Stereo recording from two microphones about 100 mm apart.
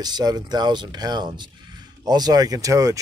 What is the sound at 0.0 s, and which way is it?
Speech, 40° right (ahead or behind).